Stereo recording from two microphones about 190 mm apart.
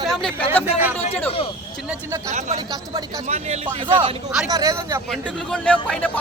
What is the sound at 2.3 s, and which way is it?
Speech, 35° right (ahead or behind).